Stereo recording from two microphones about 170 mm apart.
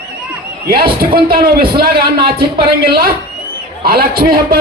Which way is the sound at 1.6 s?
65° right (ahead or behind).